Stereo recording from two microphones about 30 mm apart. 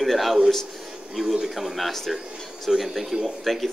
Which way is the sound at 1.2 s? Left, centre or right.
Right.